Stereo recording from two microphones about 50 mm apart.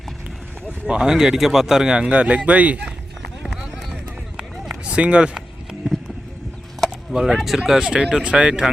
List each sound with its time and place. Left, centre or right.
0.9 s speech: centre
2.0 s speech: right
3.4 s run: centre
4.9 s speech: right
7.1 s speech: centre